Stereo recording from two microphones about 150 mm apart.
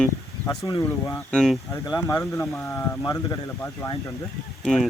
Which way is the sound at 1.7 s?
20° left (ahead or behind).